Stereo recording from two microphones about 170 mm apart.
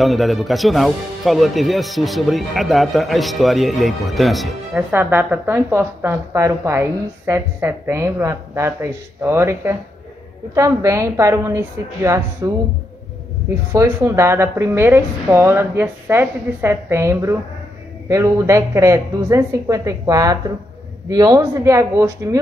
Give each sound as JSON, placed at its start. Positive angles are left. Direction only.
{"t": 0.0, "sound": "speech", "side_deg": 0}
{"t": 4.9, "sound": "a woman's voice", "side_deg": -10}
{"t": 13.7, "sound": "a woman's voice", "side_deg": -15}